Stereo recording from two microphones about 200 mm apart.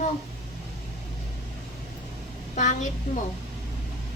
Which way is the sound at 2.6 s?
40° left (ahead or behind).